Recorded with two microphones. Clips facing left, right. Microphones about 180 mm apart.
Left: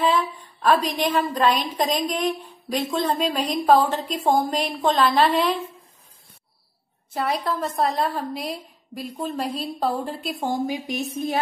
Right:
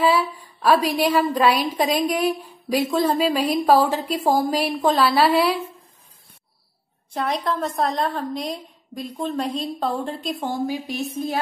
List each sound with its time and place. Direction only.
0.0 s a sound: 10° right (ahead or behind)
0.7 s a woman's voice: 10° right (ahead or behind)
7.2 s a woman's voice: 5° left (ahead or behind)
10.4 s a woman's voice: 15° left (ahead or behind)